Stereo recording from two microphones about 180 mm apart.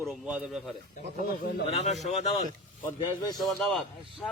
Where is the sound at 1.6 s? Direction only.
35° left (ahead or behind).